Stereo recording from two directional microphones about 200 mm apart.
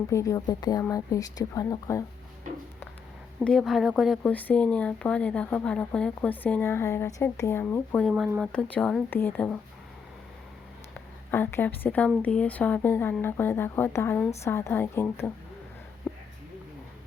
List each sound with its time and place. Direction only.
0.1 s speech: 15° left (ahead or behind)
3.4 s speech: centre (ahead or behind)
8.1 s speech: 5° right (ahead or behind)
10.9 s speech: 10° left (ahead or behind)
16.1 s a sound: centre (ahead or behind)